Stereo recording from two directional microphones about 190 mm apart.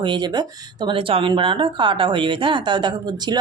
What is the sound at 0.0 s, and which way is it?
Speech, 25° right (ahead or behind).